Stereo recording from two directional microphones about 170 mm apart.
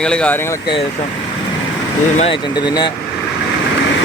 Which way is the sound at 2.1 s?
35° left (ahead or behind).